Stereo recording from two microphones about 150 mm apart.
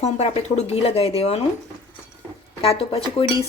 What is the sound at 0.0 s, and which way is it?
Speech, 50° left (ahead or behind).